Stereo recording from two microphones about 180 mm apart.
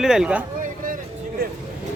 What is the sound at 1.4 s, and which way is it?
Vehicle, 60° right (ahead or behind).